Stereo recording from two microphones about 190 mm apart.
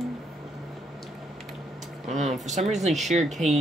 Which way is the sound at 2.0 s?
35° right (ahead or behind).